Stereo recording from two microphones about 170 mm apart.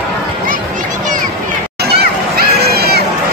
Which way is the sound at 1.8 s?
70° right (ahead or behind).